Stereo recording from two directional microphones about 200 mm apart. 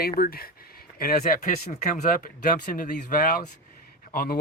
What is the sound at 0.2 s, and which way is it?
Speech, 45° left (ahead or behind).